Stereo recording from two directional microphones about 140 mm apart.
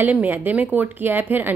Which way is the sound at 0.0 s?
15° right (ahead or behind).